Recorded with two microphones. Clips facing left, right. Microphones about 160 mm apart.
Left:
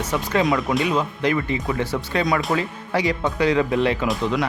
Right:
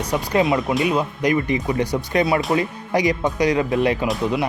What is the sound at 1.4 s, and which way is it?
Speech, 25° right (ahead or behind).